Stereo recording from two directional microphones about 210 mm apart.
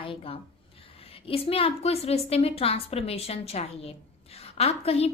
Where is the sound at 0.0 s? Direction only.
25° left (ahead or behind).